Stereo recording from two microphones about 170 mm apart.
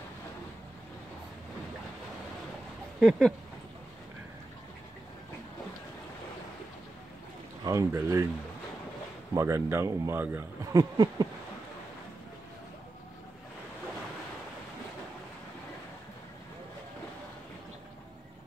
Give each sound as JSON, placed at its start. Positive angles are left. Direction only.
{"t": 3.0, "sound": "speech", "side_deg": 0}
{"t": 7.6, "sound": "speech", "side_deg": -20}
{"t": 9.3, "sound": "speech", "side_deg": -15}